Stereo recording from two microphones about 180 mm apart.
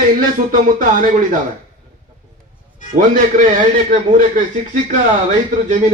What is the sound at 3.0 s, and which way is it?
A man's voice, 45° right (ahead or behind).